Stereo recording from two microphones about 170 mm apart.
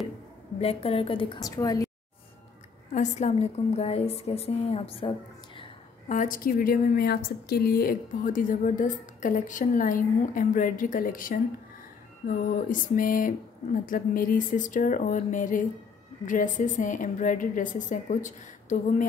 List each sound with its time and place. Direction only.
0.6 s a woman's voice: 35° left (ahead or behind)
2.9 s a woman's voice: 40° left (ahead or behind)
6.0 s a woman's voice: 50° left (ahead or behind)
12.5 s a woman's voice: 50° left (ahead or behind)